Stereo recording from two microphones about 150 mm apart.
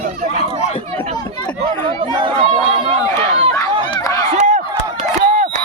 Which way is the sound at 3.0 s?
20° left (ahead or behind).